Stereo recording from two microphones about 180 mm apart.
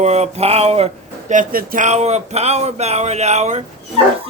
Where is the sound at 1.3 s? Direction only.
50° right (ahead or behind).